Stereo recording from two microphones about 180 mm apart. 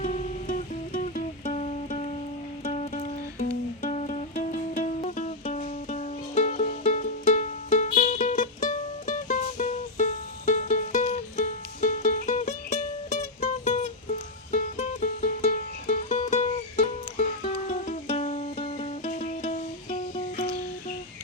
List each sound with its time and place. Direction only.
0.0 s music: 40° left (ahead or behind)
4.9 s music: 40° left (ahead or behind)
19.0 s music: 45° left (ahead or behind)